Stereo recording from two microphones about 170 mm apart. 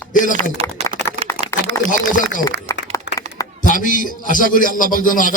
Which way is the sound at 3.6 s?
50° left (ahead or behind).